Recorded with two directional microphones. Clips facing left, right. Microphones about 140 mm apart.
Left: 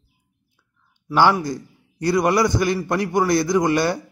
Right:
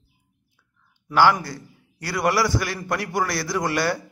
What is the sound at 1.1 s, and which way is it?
A man's voice, 20° left (ahead or behind).